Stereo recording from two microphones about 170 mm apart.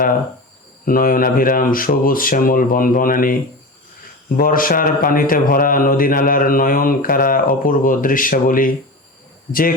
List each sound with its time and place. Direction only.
0.9 s speech: 55° left (ahead or behind)
4.4 s speech: 55° left (ahead or behind)